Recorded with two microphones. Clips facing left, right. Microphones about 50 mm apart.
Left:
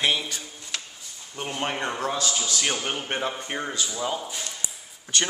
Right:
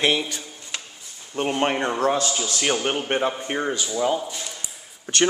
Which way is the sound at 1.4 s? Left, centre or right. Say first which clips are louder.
Right 7 dB; right.